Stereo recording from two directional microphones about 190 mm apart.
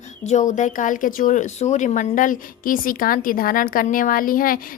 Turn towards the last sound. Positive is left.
turn(degrees=50)  # may be behind; listen again after turning